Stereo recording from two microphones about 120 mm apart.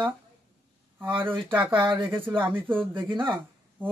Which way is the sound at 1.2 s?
15° right (ahead or behind).